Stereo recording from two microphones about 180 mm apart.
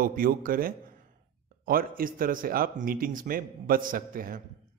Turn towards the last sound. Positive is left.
turn(degrees=-50)  # may be behind; listen again after turning